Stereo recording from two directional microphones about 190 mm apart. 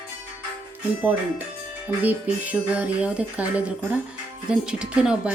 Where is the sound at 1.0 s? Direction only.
10° right (ahead or behind).